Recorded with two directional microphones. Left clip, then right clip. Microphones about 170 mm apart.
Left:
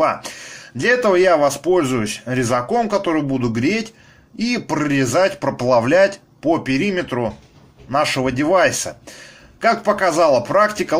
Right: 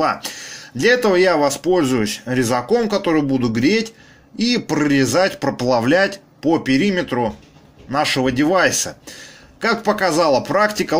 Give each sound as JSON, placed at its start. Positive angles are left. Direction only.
{"t": 0.0, "sound": "speech", "side_deg": -25}